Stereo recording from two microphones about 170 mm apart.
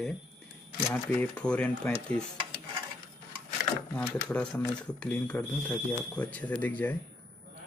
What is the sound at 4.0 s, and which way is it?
Speech, 5° left (ahead or behind).